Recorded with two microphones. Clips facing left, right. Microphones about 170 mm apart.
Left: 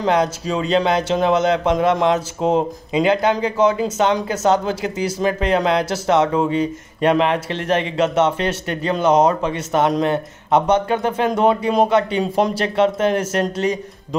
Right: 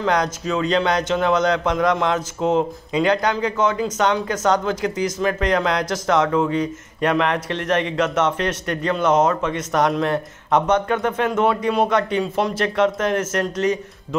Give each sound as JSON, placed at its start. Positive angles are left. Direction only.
{"t": 0.0, "sound": "speech", "side_deg": 25}